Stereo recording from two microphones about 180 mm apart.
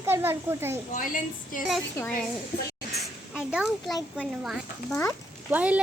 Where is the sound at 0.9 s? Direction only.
50° left (ahead or behind).